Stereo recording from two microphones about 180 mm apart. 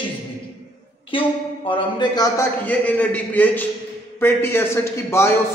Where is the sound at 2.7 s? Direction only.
10° left (ahead or behind).